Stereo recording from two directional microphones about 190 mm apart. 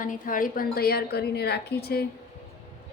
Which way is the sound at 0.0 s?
45° left (ahead or behind).